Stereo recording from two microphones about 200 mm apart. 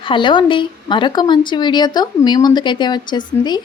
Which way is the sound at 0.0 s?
25° left (ahead or behind).